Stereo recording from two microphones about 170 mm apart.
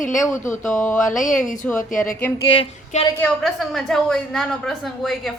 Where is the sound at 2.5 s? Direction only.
90° left.